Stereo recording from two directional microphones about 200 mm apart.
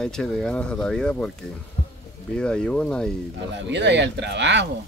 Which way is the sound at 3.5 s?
60° right (ahead or behind).